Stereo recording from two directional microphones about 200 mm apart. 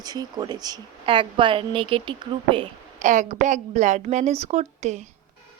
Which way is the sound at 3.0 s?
35° right (ahead or behind).